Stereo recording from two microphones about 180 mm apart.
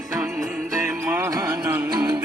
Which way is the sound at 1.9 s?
25° right (ahead or behind).